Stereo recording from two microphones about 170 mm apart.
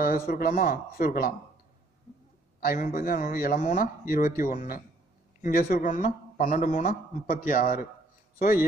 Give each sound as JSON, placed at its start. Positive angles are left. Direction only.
{"t": 0.3, "sound": "speech", "side_deg": 55}
{"t": 2.6, "sound": "a man's voice", "side_deg": 60}